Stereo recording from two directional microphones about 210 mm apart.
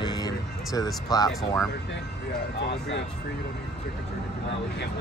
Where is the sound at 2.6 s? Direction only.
55° left (ahead or behind).